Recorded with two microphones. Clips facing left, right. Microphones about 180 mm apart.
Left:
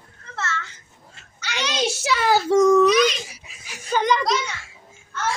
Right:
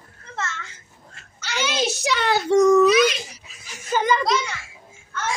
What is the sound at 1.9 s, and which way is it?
Speech, 5° left (ahead or behind).